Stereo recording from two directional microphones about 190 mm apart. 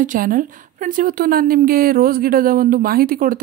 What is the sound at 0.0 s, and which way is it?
Speech, 45° right (ahead or behind).